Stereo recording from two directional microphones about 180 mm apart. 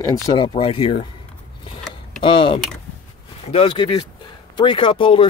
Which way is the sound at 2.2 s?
30° left (ahead or behind).